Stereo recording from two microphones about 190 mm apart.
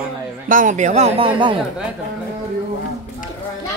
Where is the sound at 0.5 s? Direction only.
45° right (ahead or behind); by 1.6 s 25° right (ahead or behind).